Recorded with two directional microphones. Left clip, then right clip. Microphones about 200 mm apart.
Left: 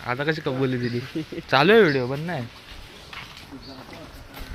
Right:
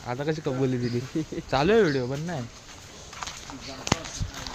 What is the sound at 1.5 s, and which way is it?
Speech, 10° left (ahead or behind).